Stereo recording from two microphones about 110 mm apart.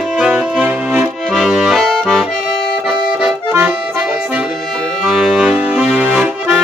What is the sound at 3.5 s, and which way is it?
Accordion, 20° right (ahead or behind).